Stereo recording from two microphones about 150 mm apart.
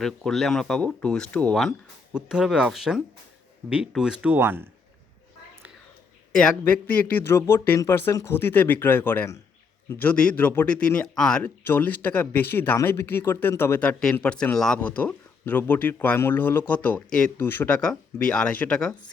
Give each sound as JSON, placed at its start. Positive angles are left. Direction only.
{"t": 0.0, "sound": "speech", "side_deg": 0}
{"t": 2.1, "sound": "speech", "side_deg": -5}
{"t": 6.9, "sound": "speech", "side_deg": 10}